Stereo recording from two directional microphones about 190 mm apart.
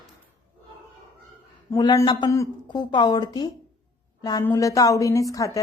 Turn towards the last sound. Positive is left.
turn(degrees=15)  # may be behind; listen again after turning